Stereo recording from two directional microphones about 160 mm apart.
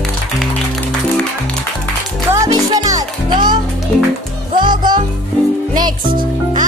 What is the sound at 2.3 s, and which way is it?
Music, 20° right (ahead or behind).